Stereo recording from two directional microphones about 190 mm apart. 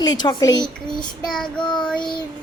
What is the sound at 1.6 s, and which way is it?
Speech, 25° left (ahead or behind).